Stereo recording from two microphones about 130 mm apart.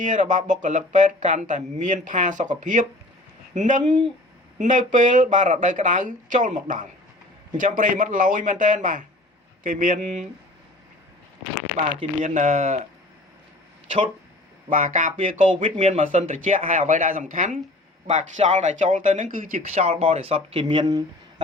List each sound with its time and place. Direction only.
0.0 s speech: 80° right
12.2 s speech: 70° right (ahead or behind)
14.7 s speech: 90° right
18.1 s speech: 65° right (ahead or behind); by 19.6 s 90° right
19.6 s speech: 50° right (ahead or behind)
20.8 s speech: 25° right (ahead or behind)